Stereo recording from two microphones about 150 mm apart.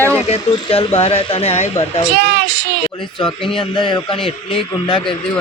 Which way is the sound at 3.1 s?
35° left (ahead or behind).